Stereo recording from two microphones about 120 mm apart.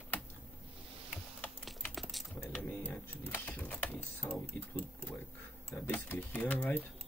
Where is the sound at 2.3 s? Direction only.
15° left (ahead or behind).